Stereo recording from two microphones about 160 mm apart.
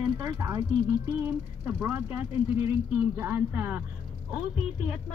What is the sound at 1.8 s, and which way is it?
Speech, 10° right (ahead or behind).